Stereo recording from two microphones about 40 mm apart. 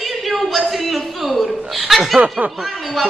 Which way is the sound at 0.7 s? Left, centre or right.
Centre.